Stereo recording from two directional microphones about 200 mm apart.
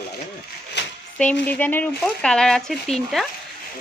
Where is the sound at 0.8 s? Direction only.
60° left (ahead or behind).